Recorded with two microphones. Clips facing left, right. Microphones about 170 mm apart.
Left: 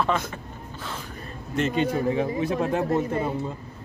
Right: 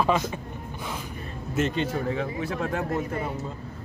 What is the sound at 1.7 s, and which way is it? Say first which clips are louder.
Speech: left 4 dB; 15° left (ahead or behind).